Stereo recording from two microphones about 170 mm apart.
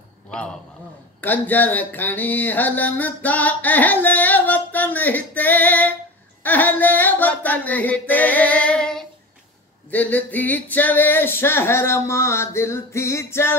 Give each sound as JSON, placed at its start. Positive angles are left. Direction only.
{"t": 1.2, "sound": "music", "side_deg": 10}